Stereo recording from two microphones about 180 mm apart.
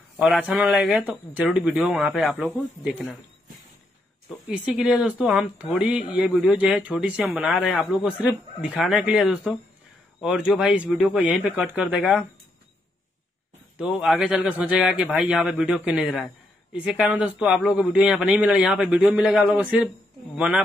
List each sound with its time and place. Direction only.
0.2 s speech: 5° right (ahead or behind)
4.5 s speech: 5° right (ahead or behind)
13.7 s speech: 5° right (ahead or behind)